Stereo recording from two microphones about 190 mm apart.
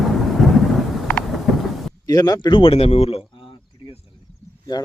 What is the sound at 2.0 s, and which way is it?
Speech, 20° left (ahead or behind).